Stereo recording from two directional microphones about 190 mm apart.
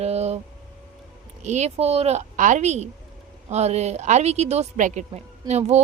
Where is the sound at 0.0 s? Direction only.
35° right (ahead or behind).